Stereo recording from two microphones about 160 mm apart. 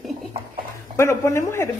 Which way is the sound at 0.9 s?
20° left (ahead or behind).